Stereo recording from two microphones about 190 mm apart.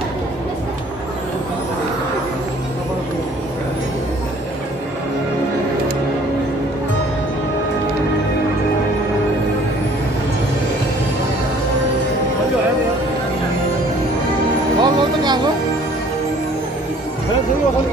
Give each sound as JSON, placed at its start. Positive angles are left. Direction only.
{"t": 14.8, "sound": "music", "side_deg": -25}